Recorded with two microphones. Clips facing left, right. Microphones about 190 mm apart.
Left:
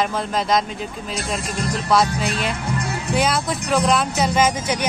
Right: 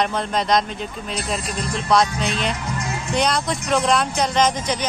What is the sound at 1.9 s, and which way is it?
Speech, centre (ahead or behind).